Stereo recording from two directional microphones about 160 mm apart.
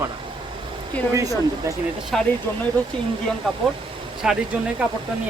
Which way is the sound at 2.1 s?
Centre (ahead or behind).